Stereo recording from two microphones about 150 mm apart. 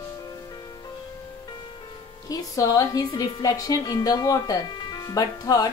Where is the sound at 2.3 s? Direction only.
25° left (ahead or behind).